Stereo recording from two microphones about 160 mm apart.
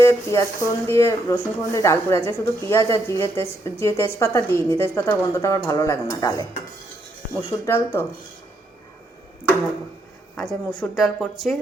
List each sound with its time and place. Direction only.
0.0 s speech: 20° left (ahead or behind)
7.6 s speech: 15° left (ahead or behind)
10.3 s a woman's voice: 5° left (ahead or behind)